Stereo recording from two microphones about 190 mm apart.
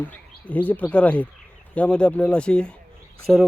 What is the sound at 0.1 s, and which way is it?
Speech, 10° left (ahead or behind).